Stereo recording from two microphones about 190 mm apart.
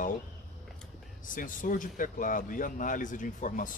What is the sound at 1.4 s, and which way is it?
Speech, 45° left (ahead or behind).